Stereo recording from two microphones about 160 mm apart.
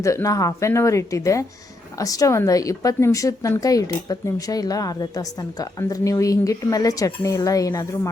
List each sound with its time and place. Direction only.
0.0 s a woman's voice: 20° left (ahead or behind)